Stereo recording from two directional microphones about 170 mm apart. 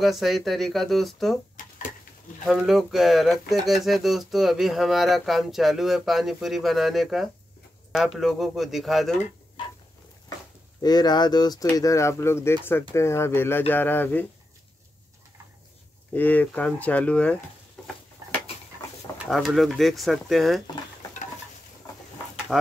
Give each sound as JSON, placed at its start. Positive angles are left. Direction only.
{"t": 0.0, "sound": "speech", "side_deg": 0}
{"t": 2.4, "sound": "speech", "side_deg": 0}
{"t": 10.8, "sound": "speech", "side_deg": 25}
{"t": 16.1, "sound": "speech", "side_deg": 10}
{"t": 17.8, "sound": "a sound", "side_deg": 5}
{"t": 19.2, "sound": "speech", "side_deg": 0}
{"t": 22.5, "sound": "speech", "side_deg": 0}